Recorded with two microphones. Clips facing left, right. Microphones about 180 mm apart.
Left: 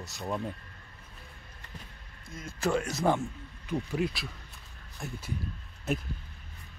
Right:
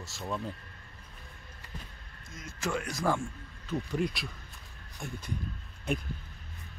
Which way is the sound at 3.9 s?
5° left (ahead or behind).